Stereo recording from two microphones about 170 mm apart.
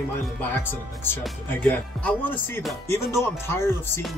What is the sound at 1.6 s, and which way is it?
Speech, 10° left (ahead or behind).